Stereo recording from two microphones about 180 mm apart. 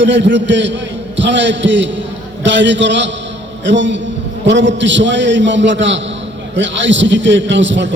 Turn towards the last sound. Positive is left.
turn(degrees=-90)